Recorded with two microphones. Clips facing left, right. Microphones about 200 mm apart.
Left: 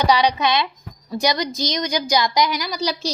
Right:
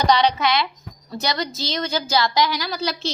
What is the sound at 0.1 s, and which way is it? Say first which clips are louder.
A woman's voice: even; 15° left (ahead or behind).